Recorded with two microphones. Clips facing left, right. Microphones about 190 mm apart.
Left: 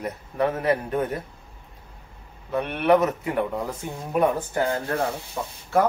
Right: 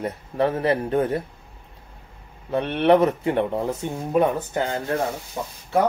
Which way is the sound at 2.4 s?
30° right (ahead or behind).